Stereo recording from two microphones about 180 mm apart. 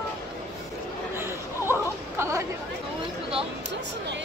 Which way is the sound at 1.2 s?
15° right (ahead or behind).